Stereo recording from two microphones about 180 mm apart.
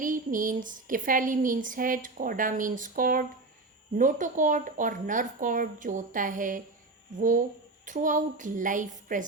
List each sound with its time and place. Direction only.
0.0 s speech: 50° right (ahead or behind)